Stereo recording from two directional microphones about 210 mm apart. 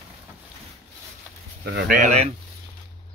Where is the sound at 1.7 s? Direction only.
50° right (ahead or behind).